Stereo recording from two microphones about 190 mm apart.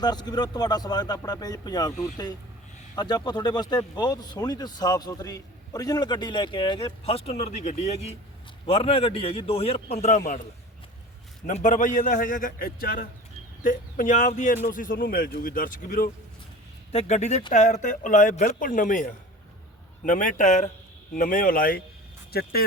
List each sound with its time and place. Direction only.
0.0 s a man's voice: 20° left (ahead or behind); by 10.4 s 40° left (ahead or behind)
11.4 s a man's voice: 40° left (ahead or behind)